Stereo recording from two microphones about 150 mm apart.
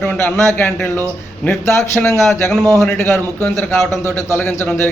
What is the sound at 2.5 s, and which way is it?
Speech, 5° left (ahead or behind).